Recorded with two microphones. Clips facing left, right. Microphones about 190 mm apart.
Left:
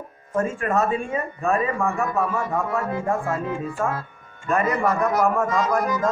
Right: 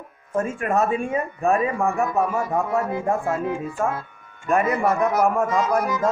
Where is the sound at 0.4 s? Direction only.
Centre (ahead or behind).